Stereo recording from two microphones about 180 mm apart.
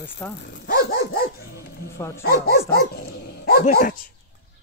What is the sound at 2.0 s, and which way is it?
Speech, 15° left (ahead or behind).